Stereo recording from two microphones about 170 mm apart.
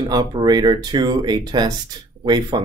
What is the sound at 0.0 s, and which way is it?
Speech, 25° right (ahead or behind).